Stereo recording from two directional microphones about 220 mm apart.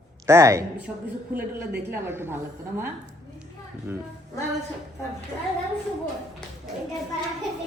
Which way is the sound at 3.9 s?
10° right (ahead or behind).